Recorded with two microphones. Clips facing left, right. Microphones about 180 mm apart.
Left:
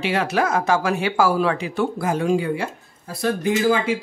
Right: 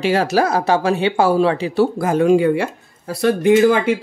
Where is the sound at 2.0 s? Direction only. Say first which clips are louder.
Right 7 dB; 55° right (ahead or behind).